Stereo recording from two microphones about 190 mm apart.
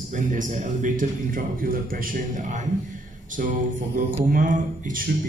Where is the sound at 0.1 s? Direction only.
40° right (ahead or behind).